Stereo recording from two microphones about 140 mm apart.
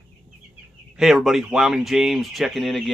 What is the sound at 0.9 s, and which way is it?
Speech, 5° right (ahead or behind).